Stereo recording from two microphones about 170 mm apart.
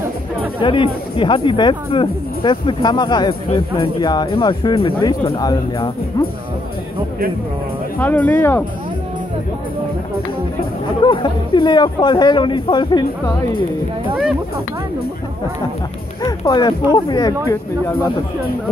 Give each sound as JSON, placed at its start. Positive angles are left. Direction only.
{"t": 0.6, "sound": "speech", "side_deg": 30}
{"t": 8.0, "sound": "speech", "side_deg": 10}
{"t": 10.6, "sound": "speech", "side_deg": 30}
{"t": 16.2, "sound": "speech", "side_deg": 25}